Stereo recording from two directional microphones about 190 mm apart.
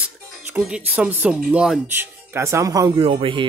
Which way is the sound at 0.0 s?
10° right (ahead or behind).